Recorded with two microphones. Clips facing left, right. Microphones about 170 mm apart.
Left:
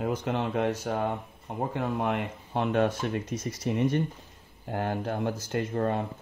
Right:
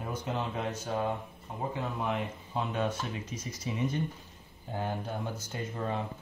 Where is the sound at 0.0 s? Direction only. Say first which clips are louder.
Left 6 dB; 70° left (ahead or behind); by 4.0 s 55° left (ahead or behind).